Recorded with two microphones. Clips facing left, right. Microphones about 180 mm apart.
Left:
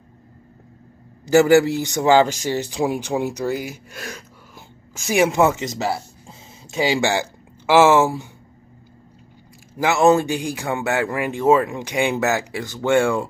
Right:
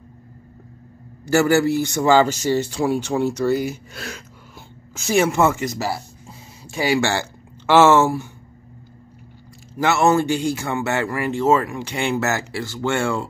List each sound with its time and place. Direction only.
1.2 s speech: 15° left (ahead or behind)
9.8 s speech: 15° left (ahead or behind)